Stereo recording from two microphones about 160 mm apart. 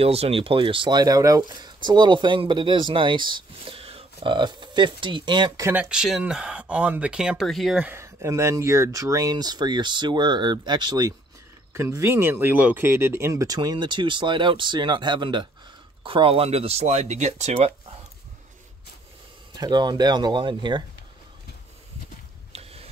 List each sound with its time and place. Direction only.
0.0 s speech: 40° right (ahead or behind)
5.7 s speech: 5° right (ahead or behind)
7.9 s speech: 15° right (ahead or behind); by 17.7 s 40° right (ahead or behind)
19.5 s speech: 25° right (ahead or behind)
22.5 s mechanisms: 40° right (ahead or behind)